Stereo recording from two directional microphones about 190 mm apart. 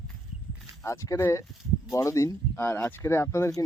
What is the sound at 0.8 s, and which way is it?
Speech, 15° left (ahead or behind).